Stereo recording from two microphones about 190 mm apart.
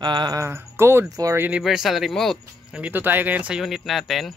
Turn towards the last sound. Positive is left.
turn(degrees=0)  # may be behind; listen again after turning